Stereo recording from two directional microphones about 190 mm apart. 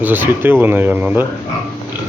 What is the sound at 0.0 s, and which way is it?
Speech, 10° right (ahead or behind).